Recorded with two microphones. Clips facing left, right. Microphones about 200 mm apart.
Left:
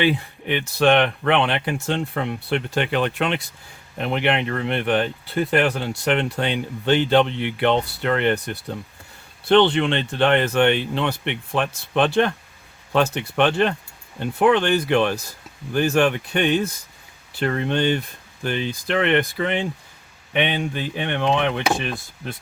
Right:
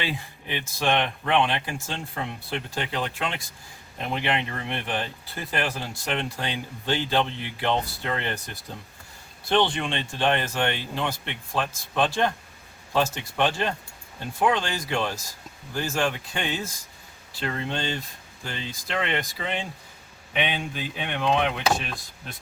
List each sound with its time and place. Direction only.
0.0 s speech: 65° left (ahead or behind)